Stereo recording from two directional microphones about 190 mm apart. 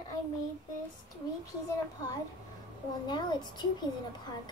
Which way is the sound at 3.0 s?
25° left (ahead or behind).